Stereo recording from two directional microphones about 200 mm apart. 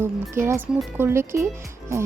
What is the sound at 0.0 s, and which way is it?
Speech, 10° right (ahead or behind).